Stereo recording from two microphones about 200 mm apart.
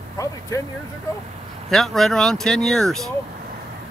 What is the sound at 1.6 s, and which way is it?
Speech, centre (ahead or behind).